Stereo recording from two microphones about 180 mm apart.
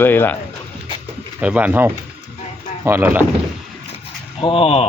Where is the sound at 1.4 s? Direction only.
10° right (ahead or behind).